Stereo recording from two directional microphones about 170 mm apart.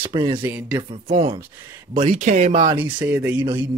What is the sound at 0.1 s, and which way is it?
Speech, 25° right (ahead or behind).